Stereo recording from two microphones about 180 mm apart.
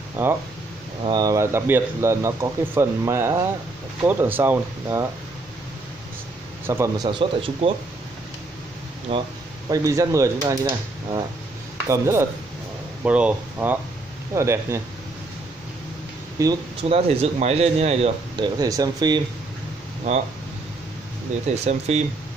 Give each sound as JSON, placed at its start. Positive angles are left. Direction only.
{"t": 0.2, "sound": "speech", "side_deg": -10}
{"t": 1.0, "sound": "speech", "side_deg": -20}
{"t": 6.6, "sound": "a man's voice", "side_deg": -15}
{"t": 7.1, "sound": "speech", "side_deg": -30}
{"t": 9.1, "sound": "speech", "side_deg": -30}
{"t": 9.7, "sound": "speech", "side_deg": -20}
{"t": 16.4, "sound": "speech", "side_deg": -20}
{"t": 16.9, "sound": "speech", "side_deg": -35}
{"t": 21.6, "sound": "speech", "side_deg": -35}